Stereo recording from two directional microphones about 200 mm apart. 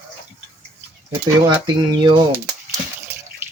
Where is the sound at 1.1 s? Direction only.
20° right (ahead or behind).